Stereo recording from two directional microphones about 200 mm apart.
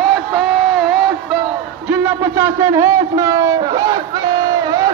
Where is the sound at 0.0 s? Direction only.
Centre (ahead or behind).